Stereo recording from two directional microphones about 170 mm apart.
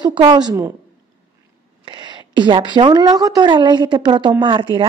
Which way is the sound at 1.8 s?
30° right (ahead or behind).